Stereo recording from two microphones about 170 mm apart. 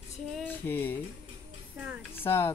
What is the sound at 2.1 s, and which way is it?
Speech, 15° left (ahead or behind).